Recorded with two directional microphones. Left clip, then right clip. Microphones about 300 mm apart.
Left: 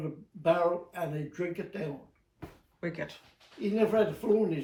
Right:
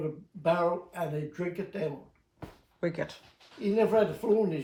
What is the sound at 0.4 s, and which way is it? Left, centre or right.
Speech, centre.